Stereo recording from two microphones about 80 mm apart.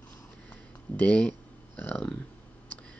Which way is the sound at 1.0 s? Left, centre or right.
Centre.